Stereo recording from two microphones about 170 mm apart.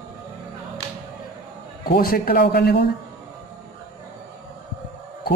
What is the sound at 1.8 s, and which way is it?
A man's voice, 60° left (ahead or behind).